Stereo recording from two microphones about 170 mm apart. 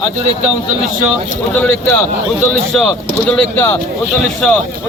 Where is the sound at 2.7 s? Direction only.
5° left (ahead or behind).